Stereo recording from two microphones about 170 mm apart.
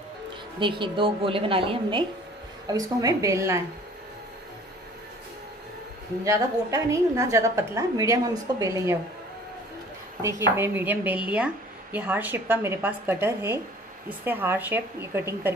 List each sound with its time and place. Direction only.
0.6 s a woman's voice: 30° right (ahead or behind)
6.2 s speech: 20° right (ahead or behind)
10.2 s speech: 15° right (ahead or behind)